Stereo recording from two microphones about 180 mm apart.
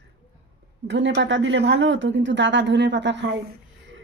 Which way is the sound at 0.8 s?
80° right.